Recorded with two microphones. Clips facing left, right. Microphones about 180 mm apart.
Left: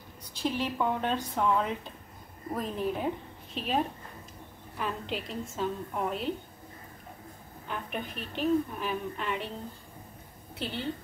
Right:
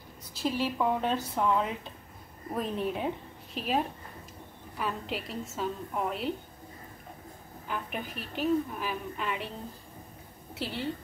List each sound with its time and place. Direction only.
0.4 s a woman's voice: centre (ahead or behind)
7.6 s a woman's voice: 5° right (ahead or behind)
10.5 s a woman's voice: 5° right (ahead or behind)